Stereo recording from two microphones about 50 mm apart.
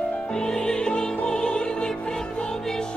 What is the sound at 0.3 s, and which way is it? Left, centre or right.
Music, centre.